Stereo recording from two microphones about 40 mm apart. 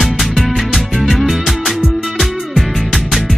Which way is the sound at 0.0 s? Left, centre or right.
Centre.